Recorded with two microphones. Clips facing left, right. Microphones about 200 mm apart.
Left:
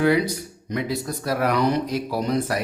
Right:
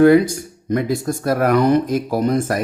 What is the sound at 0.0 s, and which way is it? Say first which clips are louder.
Speech: right 8 dB; 50° right (ahead or behind).